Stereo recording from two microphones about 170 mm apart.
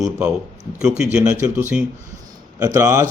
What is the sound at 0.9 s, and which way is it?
A man's voice, 5° right (ahead or behind).